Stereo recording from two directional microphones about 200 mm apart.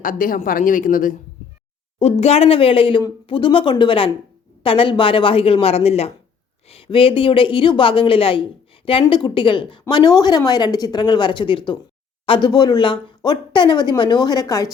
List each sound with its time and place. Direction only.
0.0 s speech: 45° left (ahead or behind)
2.0 s speech: 35° left (ahead or behind); by 14.7 s 15° left (ahead or behind)